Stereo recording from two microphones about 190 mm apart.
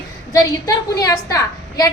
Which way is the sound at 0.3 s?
20° left (ahead or behind).